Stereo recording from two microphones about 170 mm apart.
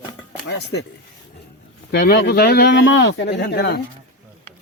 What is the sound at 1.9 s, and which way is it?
Speech, 85° left.